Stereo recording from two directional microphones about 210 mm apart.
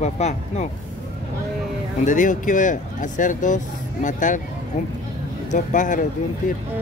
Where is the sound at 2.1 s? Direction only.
35° left (ahead or behind).